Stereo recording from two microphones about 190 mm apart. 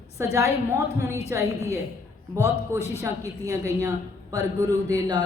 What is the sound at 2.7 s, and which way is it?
Speech, 15° left (ahead or behind).